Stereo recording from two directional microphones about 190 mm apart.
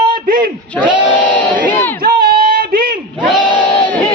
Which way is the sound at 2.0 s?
55° right (ahead or behind).